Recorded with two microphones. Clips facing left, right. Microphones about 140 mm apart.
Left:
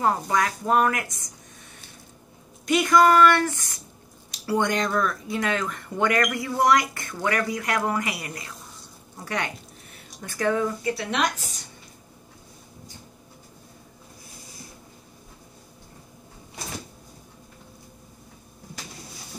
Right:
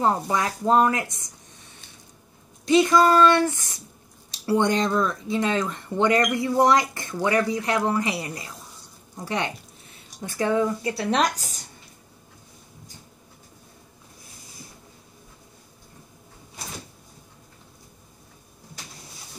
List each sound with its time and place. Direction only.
0.0 s speech: 25° right (ahead or behind)
2.6 s speech: 25° right (ahead or behind)